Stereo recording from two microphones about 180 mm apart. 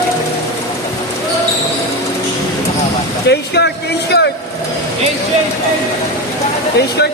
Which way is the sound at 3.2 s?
70° left (ahead or behind).